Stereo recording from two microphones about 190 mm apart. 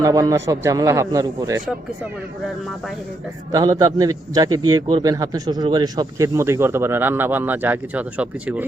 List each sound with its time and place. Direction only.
0.0 s a man's voice: 20° right (ahead or behind)
3.5 s a man's voice: 20° right (ahead or behind)